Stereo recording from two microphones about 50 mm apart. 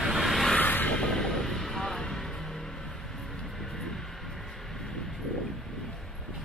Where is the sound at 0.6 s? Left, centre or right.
Left.